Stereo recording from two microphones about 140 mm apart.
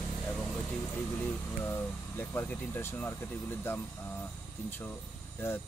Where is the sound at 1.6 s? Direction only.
15° left (ahead or behind).